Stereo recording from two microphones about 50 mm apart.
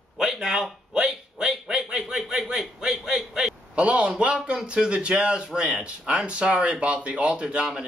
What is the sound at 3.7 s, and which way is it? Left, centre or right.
Speech, right.